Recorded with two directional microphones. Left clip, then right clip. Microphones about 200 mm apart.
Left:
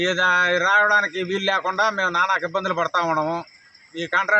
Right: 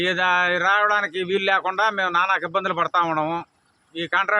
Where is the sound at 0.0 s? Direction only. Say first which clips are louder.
Left 1 dB; 30° right (ahead or behind).